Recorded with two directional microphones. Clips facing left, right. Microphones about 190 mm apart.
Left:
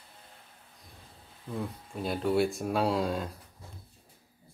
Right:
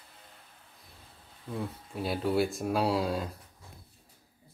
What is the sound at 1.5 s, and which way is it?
Speech, 5° right (ahead or behind).